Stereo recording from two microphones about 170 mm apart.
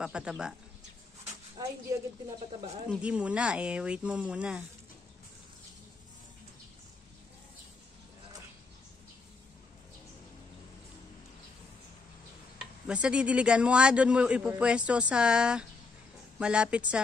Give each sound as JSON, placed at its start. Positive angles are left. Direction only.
{"t": 0.0, "sound": "speech", "side_deg": -5}
{"t": 1.9, "sound": "a woman's voice", "side_deg": -20}
{"t": 3.0, "sound": "a man's voice", "side_deg": -5}
{"t": 12.8, "sound": "a man's voice", "side_deg": -5}